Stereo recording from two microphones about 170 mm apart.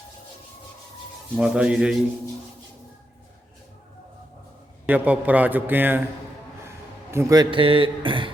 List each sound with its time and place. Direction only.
1.4 s speech: 5° right (ahead or behind)
4.9 s a man's voice: 10° right (ahead or behind); by 8.3 s 30° right (ahead or behind)